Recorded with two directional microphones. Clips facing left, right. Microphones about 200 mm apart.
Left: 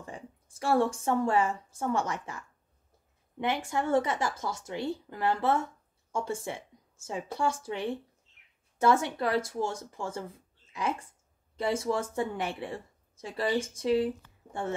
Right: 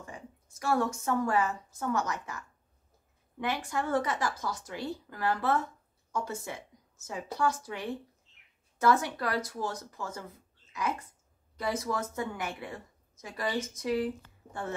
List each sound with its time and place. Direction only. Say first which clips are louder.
0.0 s a woman's voice: left 2 dB; 30° left (ahead or behind)